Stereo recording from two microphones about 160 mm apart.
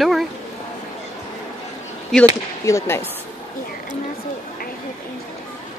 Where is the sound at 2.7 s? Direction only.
15° left (ahead or behind).